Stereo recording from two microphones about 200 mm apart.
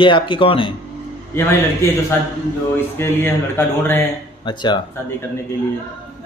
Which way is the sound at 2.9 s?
10° left (ahead or behind).